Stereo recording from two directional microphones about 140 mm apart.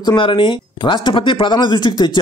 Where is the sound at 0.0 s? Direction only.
35° left (ahead or behind).